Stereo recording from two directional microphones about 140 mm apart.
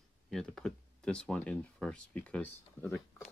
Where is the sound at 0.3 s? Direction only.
5° left (ahead or behind).